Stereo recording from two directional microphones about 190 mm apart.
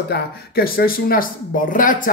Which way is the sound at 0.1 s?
50° left (ahead or behind).